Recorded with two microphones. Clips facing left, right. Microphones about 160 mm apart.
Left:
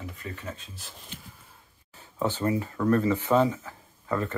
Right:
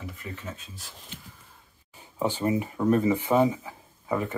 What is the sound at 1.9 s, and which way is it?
Speech, 15° right (ahead or behind).